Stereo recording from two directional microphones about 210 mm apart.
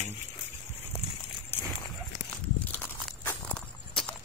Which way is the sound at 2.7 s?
5° left (ahead or behind).